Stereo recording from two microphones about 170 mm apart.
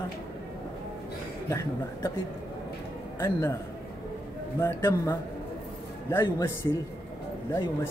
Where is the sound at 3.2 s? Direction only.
15° left (ahead or behind).